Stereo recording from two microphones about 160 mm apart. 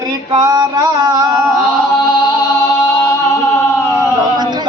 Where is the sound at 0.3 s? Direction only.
25° right (ahead or behind).